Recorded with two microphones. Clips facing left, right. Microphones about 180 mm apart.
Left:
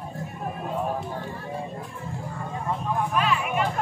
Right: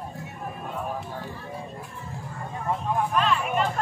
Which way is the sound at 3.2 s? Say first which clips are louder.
Even; 5° left (ahead or behind).